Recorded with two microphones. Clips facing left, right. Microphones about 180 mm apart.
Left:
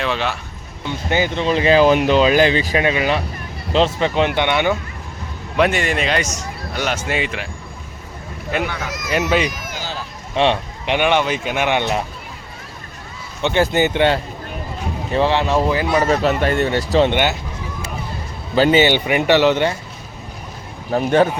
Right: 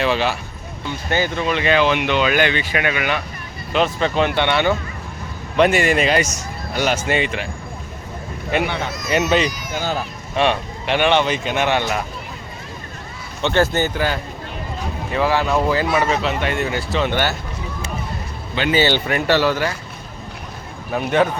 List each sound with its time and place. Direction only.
0.0 s speech: 5° right (ahead or behind)
1.1 s speech: 15° left (ahead or behind)
1.5 s speech: 30° left (ahead or behind); by 4.8 s 15° left (ahead or behind)
5.5 s speech: centre (ahead or behind)
8.6 s speech: 25° right (ahead or behind)
9.1 s speech: 5° left (ahead or behind)
9.7 s run: 55° right (ahead or behind)
10.3 s speech: 20° left (ahead or behind)
11.8 s speech: 25° left (ahead or behind)
13.4 s speech: 15° left (ahead or behind)
16.0 s speech: 45° left (ahead or behind)
17.1 s speech: 20° left (ahead or behind)
18.7 s speech: 15° left (ahead or behind)
20.9 s speech: 35° left (ahead or behind)